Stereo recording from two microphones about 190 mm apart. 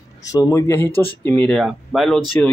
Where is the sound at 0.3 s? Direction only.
15° left (ahead or behind).